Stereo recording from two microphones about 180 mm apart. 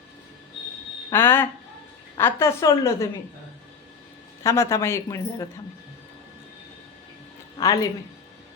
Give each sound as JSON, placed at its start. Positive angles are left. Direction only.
{"t": 1.1, "sound": "speech", "side_deg": 10}
{"t": 4.4, "sound": "speech", "side_deg": 15}
{"t": 7.6, "sound": "speech", "side_deg": 20}